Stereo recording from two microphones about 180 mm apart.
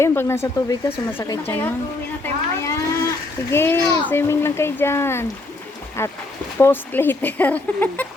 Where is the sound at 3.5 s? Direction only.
15° left (ahead or behind).